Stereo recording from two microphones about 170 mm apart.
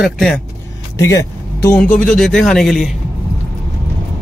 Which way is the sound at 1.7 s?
5° left (ahead or behind).